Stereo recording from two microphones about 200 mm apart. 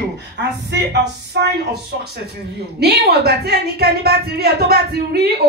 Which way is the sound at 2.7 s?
55° right (ahead or behind).